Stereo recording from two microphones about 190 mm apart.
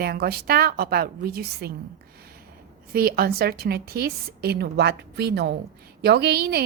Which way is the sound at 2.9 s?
50° right (ahead or behind).